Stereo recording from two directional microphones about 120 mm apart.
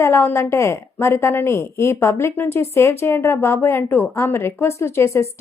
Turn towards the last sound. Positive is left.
turn(degrees=25)  # may be behind; listen again after turning